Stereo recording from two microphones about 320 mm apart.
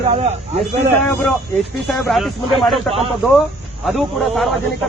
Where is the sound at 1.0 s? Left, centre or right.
Centre.